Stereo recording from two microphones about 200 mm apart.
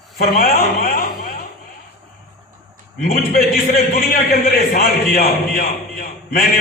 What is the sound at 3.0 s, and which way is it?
A man's voice, 45° left (ahead or behind).